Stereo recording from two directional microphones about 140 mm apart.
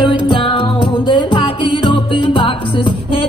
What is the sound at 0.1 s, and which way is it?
Music, 40° left (ahead or behind).